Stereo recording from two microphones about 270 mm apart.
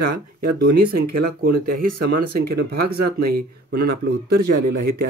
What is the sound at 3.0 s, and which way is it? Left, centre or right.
Speech, right.